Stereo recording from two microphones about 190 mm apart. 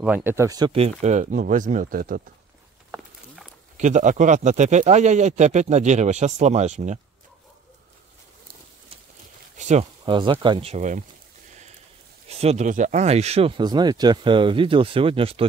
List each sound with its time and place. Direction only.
0.0 s speech: 10° right (ahead or behind); by 2.2 s 50° right (ahead or behind)
3.7 s speech: 40° right (ahead or behind)
9.6 s a sound: 40° right (ahead or behind)
10.0 s speech: 25° right (ahead or behind)
12.3 s speech: 35° right (ahead or behind)